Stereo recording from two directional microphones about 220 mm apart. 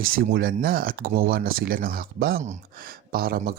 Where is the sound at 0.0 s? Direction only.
40° right (ahead or behind).